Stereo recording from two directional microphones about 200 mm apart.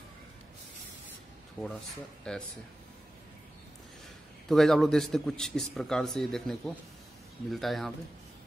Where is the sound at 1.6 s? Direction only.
Centre (ahead or behind).